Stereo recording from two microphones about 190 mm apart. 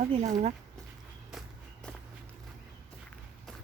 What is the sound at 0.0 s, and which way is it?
Speech, 35° right (ahead or behind).